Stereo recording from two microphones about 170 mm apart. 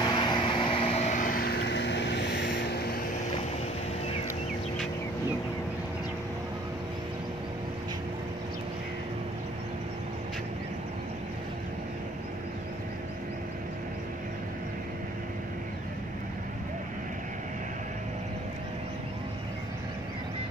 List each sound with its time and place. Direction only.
0.0 s vehicle: 25° left (ahead or behind); by 3.0 s 65° left (ahead or behind)